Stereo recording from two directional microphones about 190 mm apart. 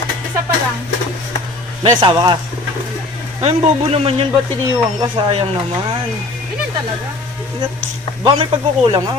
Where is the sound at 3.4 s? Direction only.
30° right (ahead or behind).